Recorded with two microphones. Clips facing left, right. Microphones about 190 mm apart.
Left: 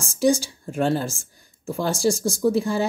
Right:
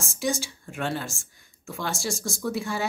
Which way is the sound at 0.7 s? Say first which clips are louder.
Left 8 dB; 35° left (ahead or behind).